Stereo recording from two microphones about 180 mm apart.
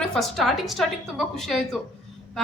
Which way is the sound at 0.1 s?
Centre (ahead or behind).